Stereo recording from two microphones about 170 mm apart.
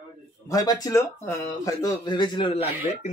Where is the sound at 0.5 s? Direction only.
20° left (ahead or behind).